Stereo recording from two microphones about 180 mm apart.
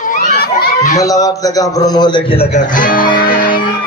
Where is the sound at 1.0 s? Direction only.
20° left (ahead or behind).